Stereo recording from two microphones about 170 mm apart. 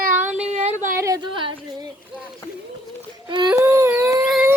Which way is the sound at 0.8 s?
15° right (ahead or behind).